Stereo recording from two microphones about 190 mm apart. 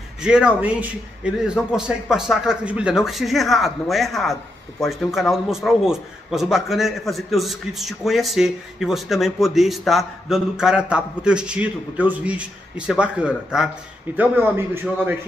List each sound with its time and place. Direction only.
0.2 s a man's voice: 5° right (ahead or behind)